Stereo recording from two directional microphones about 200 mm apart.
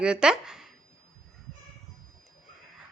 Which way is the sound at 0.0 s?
5° right (ahead or behind).